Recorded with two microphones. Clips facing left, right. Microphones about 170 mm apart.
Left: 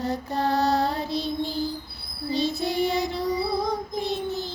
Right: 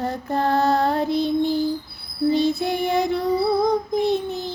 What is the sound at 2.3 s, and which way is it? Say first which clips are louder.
Child singing: right 4 dB; 55° right (ahead or behind).